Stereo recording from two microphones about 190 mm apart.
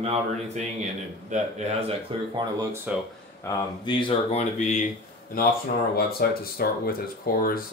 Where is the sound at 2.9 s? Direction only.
10° right (ahead or behind).